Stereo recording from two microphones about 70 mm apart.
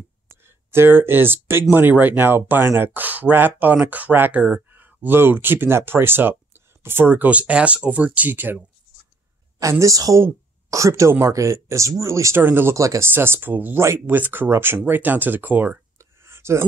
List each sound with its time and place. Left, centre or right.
0.4 s speech: right
9.6 s speech: right
12.4 s speech: right
12.7 s speech: right
13.1 s speech: right
13.7 s speech: right
14.0 s speech: right
16.0 s a sound: right